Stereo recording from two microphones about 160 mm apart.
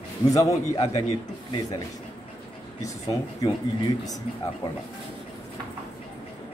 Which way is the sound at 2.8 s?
20° left (ahead or behind).